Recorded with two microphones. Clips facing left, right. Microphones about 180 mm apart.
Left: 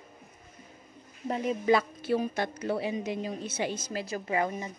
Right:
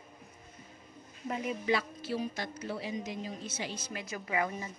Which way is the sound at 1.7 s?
55° left (ahead or behind).